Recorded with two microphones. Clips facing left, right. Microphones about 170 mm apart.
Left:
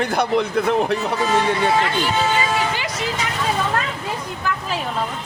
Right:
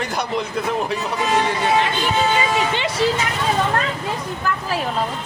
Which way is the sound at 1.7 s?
20° right (ahead or behind).